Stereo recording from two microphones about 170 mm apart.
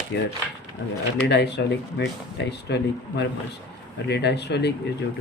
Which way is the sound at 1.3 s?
90° left.